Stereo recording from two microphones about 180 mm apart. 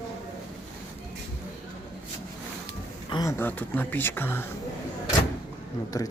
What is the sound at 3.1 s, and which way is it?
Speech, 20° left (ahead or behind).